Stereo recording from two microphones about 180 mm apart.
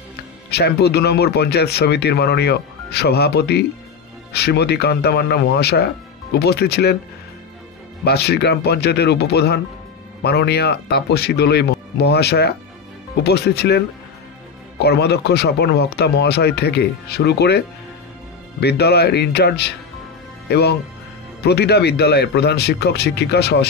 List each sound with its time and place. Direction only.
0.5 s speech: 65° left (ahead or behind)
8.0 s speech: 65° left (ahead or behind)